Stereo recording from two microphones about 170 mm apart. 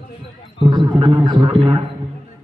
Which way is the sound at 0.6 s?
25° right (ahead or behind).